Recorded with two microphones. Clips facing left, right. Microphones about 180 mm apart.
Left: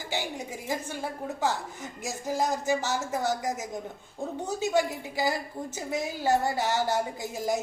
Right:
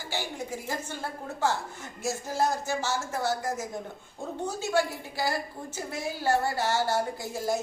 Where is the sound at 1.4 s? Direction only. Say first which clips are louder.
Right 2 dB; 15° left (ahead or behind).